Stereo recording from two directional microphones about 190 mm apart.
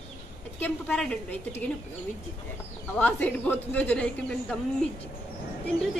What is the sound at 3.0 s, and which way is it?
Speech, 10° left (ahead or behind).